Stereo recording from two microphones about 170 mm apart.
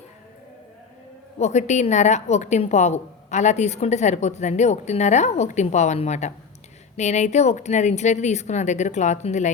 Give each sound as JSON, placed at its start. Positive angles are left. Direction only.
{"t": 1.4, "sound": "a woman's voice", "side_deg": 40}